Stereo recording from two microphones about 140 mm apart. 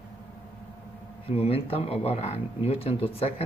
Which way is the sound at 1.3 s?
45° left (ahead or behind).